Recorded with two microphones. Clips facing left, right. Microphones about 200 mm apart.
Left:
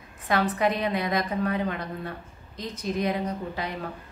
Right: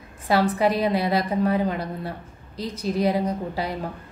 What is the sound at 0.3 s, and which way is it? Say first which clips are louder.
A woman's voice: right 4 dB; 35° right (ahead or behind).